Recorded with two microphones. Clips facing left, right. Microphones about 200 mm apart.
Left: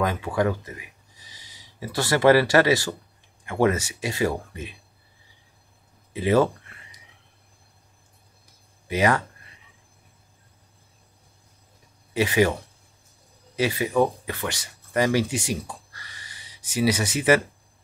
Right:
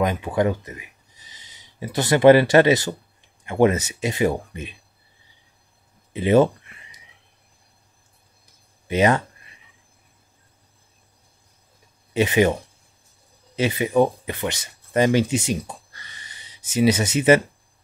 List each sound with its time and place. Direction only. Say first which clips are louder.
0.0 s speech: right 3 dB; 20° right (ahead or behind)
6.1 s a sound: right 4 dB; 20° right (ahead or behind)
8.8 s speech: right 3 dB; 20° right (ahead or behind)
12.1 s speech: right 3 dB; 20° right (ahead or behind)
13.6 s speech: right 3 dB; 20° right (ahead or behind)